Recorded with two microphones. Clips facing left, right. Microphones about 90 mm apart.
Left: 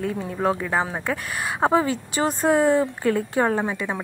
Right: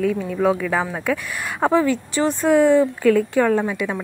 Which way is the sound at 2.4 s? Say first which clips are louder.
Right 4 dB; 45° left (ahead or behind).